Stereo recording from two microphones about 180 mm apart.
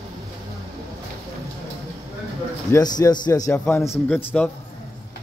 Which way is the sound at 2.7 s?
20° left (ahead or behind).